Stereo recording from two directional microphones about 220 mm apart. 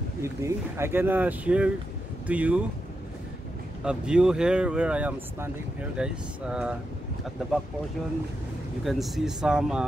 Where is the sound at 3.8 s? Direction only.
5° right (ahead or behind).